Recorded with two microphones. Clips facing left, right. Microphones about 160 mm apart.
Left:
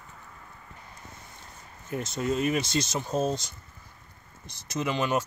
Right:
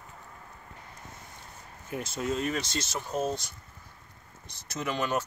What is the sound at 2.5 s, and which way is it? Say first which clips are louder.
Speech: left 5 dB; 15° left (ahead or behind).